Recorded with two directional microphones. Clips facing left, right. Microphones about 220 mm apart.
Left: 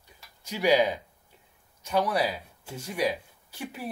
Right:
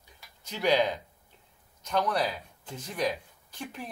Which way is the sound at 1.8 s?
10° left (ahead or behind).